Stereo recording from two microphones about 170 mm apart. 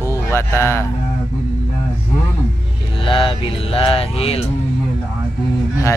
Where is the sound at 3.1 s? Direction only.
30° left (ahead or behind).